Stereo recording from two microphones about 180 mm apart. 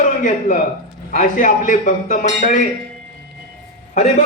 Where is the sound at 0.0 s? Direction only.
45° left (ahead or behind).